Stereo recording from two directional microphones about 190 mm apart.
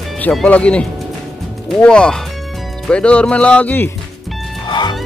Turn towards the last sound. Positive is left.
turn(degrees=25)  # may be behind; listen again after turning